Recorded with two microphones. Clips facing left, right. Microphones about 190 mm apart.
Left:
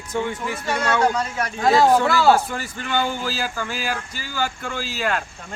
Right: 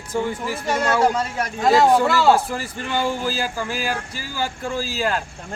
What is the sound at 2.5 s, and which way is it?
Speech, 35° right (ahead or behind).